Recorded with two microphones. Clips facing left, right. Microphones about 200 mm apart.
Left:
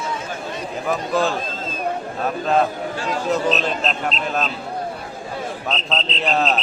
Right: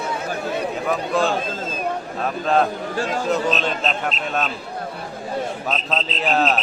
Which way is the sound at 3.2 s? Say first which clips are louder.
Left 3 dB; centre (ahead or behind).